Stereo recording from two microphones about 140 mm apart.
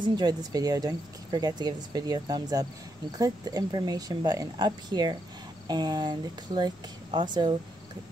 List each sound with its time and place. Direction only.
0.0 s speech: 30° right (ahead or behind)